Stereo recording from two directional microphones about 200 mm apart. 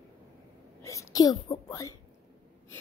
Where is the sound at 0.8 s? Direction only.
15° left (ahead or behind).